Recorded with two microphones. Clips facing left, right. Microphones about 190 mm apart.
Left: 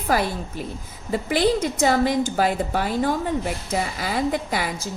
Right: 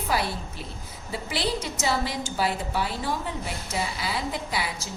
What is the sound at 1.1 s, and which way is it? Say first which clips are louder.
A woman's voice: left 9 dB; 50° left (ahead or behind).